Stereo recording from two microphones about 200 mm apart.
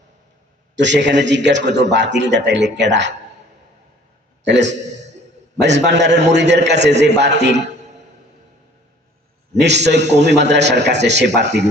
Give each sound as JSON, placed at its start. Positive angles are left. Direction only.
{"t": 0.8, "sound": "a man's voice", "side_deg": -65}
{"t": 4.4, "sound": "a man's voice", "side_deg": -60}
{"t": 4.9, "sound": "a sound", "side_deg": -35}
{"t": 5.6, "sound": "a man's voice", "side_deg": -60}
{"t": 9.6, "sound": "a man's voice", "side_deg": -60}